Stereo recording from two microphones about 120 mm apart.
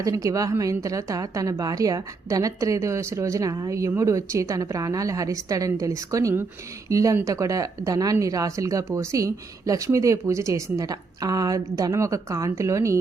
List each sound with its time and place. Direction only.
0.0 s a woman's voice: 30° right (ahead or behind)